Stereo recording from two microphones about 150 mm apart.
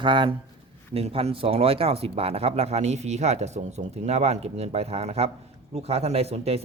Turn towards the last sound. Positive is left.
turn(degrees=-45)  # may be behind; listen again after turning